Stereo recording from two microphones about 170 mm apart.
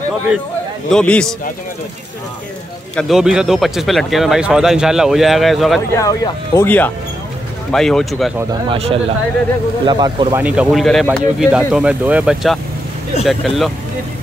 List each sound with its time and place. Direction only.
0.8 s speech: 5° left (ahead or behind)
3.0 s speech: centre (ahead or behind)
5.9 s speech: 20° left (ahead or behind); by 8.3 s centre (ahead or behind)
8.6 s speech: 35° right (ahead or behind)
10.3 s speech: 5° right (ahead or behind)